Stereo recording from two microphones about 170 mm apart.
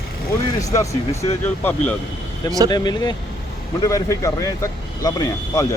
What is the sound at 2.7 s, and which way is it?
Speech, 25° left (ahead or behind).